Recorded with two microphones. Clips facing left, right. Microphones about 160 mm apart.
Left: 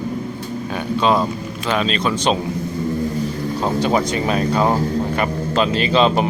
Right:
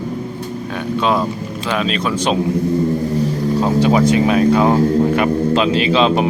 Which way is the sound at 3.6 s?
5° right (ahead or behind).